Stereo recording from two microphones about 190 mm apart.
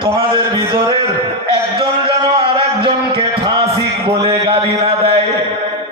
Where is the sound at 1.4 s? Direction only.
25° right (ahead or behind).